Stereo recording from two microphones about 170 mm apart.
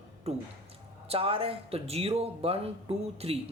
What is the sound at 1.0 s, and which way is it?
Speech, 35° right (ahead or behind).